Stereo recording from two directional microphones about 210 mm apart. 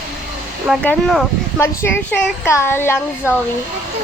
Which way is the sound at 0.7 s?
5° left (ahead or behind).